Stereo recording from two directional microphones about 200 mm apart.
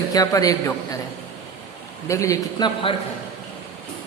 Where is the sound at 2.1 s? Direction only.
15° left (ahead or behind).